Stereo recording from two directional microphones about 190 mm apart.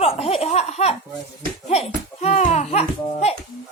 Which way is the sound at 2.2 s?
35° left (ahead or behind).